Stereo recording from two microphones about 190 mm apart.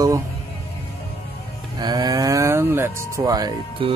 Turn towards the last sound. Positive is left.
turn(degrees=-20)  # may be behind; listen again after turning